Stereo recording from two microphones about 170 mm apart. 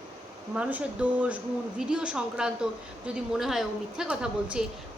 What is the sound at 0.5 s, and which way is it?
A woman's voice, 5° right (ahead or behind).